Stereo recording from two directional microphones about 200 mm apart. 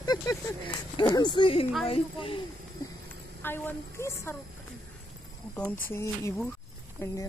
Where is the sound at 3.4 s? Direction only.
10° left (ahead or behind).